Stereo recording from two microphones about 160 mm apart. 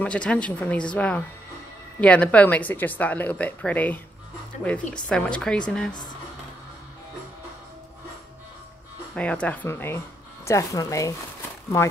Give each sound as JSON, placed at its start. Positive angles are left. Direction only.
{"t": 0.0, "sound": "a woman's voice", "side_deg": 5}
{"t": 9.1, "sound": "speech", "side_deg": 5}